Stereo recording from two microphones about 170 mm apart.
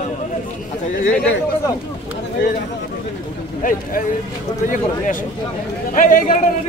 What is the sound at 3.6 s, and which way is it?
Speech, 50° left (ahead or behind).